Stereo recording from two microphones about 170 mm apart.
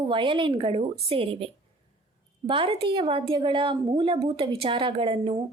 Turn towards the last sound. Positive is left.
turn(degrees=-30)  # may be behind; listen again after turning